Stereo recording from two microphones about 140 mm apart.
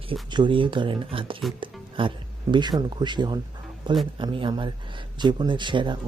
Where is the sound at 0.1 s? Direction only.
35° right (ahead or behind).